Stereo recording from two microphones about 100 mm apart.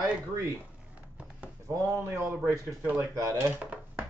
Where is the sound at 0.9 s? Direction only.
10° right (ahead or behind).